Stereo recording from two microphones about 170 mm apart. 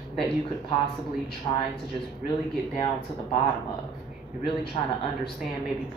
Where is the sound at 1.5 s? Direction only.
35° left (ahead or behind).